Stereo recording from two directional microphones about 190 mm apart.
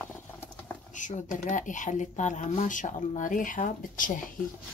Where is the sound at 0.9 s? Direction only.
40° left (ahead or behind).